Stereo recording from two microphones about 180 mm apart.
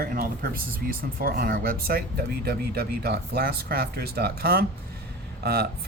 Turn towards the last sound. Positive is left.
turn(degrees=-60)  # may be behind; listen again after turning